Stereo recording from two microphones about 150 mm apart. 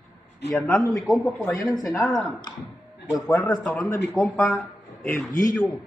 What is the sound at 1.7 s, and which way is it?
Speech, 20° left (ahead or behind).